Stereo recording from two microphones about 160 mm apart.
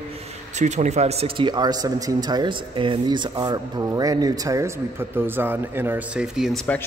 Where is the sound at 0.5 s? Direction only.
45° right (ahead or behind); by 6.6 s 5° right (ahead or behind).